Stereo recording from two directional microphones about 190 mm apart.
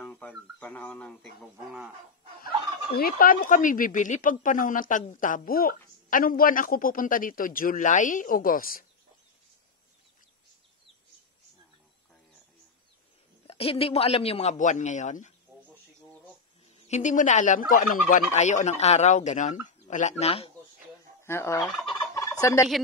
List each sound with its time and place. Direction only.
0.0 s speech: 5° left (ahead or behind)
2.4 s speech: 55° left (ahead or behind)
13.5 s fowl: 30° left (ahead or behind)
16.8 s fowl: 40° left (ahead or behind)
21.2 s fowl: 15° left (ahead or behind)